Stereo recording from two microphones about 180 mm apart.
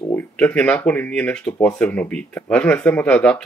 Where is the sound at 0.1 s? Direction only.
5° left (ahead or behind).